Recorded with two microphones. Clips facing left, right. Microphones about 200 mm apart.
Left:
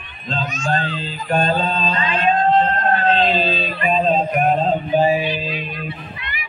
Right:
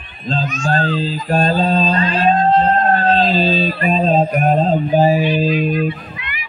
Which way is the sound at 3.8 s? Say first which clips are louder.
Right 1 dB; 40° right (ahead or behind).